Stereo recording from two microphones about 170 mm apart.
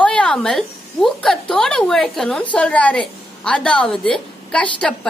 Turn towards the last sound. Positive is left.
turn(degrees=5)  # may be behind; listen again after turning